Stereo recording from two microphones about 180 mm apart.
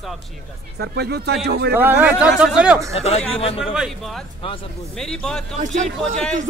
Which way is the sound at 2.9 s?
35° left (ahead or behind).